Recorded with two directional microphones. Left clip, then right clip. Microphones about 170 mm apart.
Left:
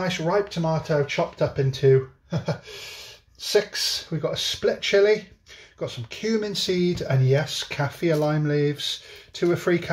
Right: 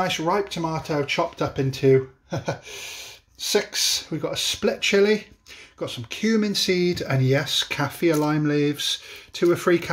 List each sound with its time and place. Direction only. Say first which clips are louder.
0.0 s speech: right 1 dB; 50° right (ahead or behind)
3.5 s speech: even; 50° right (ahead or behind)